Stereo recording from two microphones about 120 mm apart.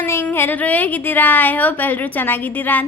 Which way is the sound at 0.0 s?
20° left (ahead or behind).